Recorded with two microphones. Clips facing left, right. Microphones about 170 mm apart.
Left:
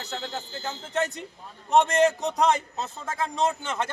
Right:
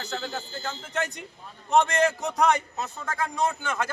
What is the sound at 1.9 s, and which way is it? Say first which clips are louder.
Speech: left 3 dB; 20° left (ahead or behind).